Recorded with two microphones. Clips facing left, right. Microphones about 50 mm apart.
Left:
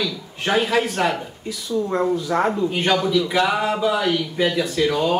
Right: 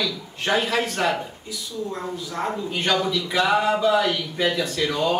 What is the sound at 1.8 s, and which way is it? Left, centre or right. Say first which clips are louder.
Speech: left 9 dB; left.